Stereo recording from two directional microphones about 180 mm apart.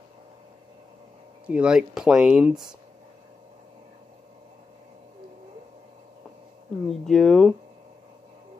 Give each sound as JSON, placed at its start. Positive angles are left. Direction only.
{"t": 1.4, "sound": "speech", "side_deg": -5}
{"t": 6.9, "sound": "speech", "side_deg": 0}